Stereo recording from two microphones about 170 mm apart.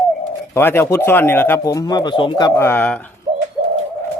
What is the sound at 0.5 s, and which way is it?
A man's voice, 15° left (ahead or behind).